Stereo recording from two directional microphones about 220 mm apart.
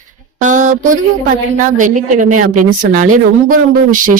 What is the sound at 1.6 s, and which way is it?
Speech, 35° right (ahead or behind).